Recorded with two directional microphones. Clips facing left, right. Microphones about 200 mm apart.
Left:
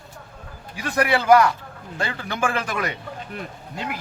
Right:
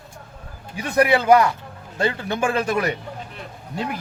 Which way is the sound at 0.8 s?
20° right (ahead or behind).